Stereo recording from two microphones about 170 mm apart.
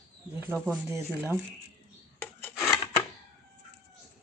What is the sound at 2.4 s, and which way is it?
Filing, 15° left (ahead or behind).